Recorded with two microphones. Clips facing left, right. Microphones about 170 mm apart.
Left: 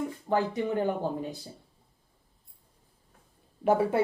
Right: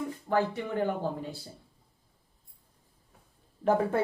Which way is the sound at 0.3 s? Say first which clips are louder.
Even; 15° left (ahead or behind).